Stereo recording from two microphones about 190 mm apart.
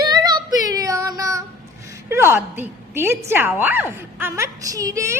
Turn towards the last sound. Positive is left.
turn(degrees=-15)  # may be behind; listen again after turning